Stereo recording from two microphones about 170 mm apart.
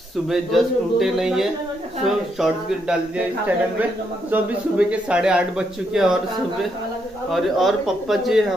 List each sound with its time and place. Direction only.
0.3 s speech: centre (ahead or behind)
7.2 s speech: centre (ahead or behind)